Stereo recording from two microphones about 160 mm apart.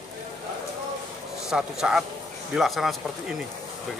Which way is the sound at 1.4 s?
5° right (ahead or behind).